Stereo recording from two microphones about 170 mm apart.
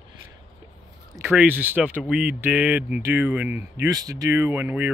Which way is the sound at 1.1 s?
10° right (ahead or behind).